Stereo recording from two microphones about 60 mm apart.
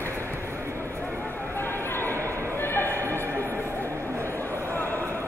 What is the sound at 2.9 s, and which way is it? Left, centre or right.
Music, right.